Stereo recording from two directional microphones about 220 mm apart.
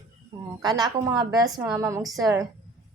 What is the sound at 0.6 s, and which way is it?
A woman's voice, 20° right (ahead or behind).